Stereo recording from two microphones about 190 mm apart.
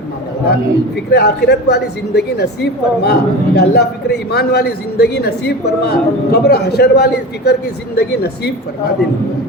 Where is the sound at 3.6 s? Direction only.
60° left (ahead or behind).